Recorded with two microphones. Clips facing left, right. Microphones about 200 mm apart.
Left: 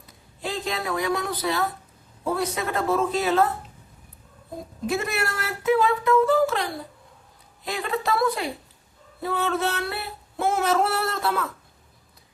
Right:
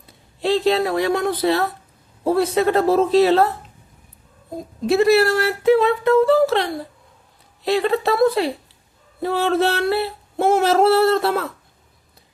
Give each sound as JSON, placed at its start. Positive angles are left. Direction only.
{"t": 0.5, "sound": "speech", "side_deg": -30}
{"t": 4.9, "sound": "speech", "side_deg": -30}
{"t": 7.8, "sound": "speech", "side_deg": -30}